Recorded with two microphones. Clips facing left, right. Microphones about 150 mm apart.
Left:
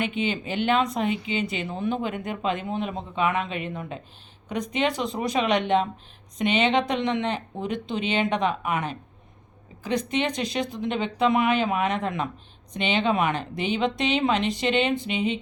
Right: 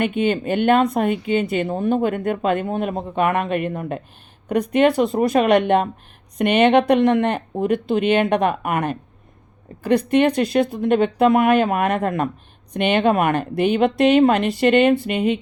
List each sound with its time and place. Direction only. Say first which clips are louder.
0.0 s speech: right 7 dB; 55° right (ahead or behind)